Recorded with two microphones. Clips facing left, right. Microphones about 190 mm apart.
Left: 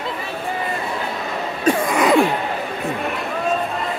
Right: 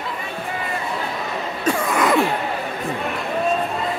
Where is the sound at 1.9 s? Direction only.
20° left (ahead or behind).